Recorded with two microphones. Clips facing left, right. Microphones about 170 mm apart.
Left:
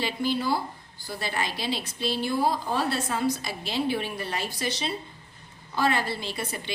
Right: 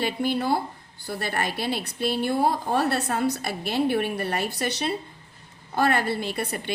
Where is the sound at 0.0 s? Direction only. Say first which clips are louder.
Right 2 dB; 60° right (ahead or behind).